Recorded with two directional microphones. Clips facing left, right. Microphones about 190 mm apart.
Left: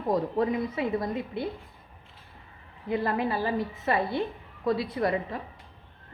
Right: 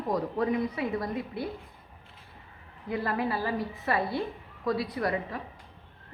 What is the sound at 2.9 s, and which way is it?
A woman's voice, 25° left (ahead or behind).